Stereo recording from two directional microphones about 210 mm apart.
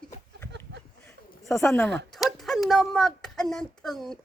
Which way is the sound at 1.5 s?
10° left (ahead or behind).